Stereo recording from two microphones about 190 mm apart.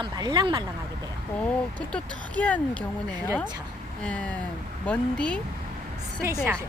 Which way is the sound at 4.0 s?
5° left (ahead or behind).